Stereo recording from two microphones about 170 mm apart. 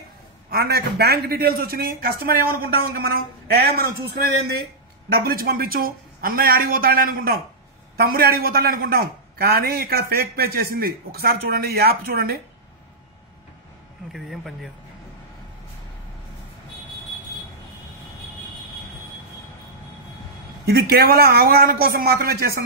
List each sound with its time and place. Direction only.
0.5 s a man's voice: 65° right (ahead or behind)
5.1 s a man's voice: 60° right (ahead or behind)
14.1 s speech: centre (ahead or behind)
20.9 s a man's voice: 65° right (ahead or behind)